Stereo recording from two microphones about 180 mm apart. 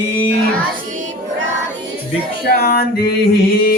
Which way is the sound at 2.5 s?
60° left (ahead or behind).